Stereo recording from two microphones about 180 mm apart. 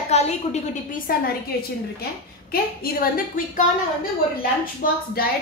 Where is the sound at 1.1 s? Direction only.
55° left (ahead or behind).